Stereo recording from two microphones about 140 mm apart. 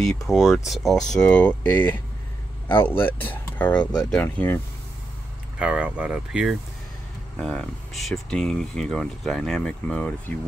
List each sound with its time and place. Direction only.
0.3 s speech: 5° right (ahead or behind); by 2.0 s 15° left (ahead or behind)
2.7 s speech: 40° left (ahead or behind)
3.0 s speech: 10° left (ahead or behind)
5.6 s speech: 5° right (ahead or behind)
7.3 s speech: 5° left (ahead or behind)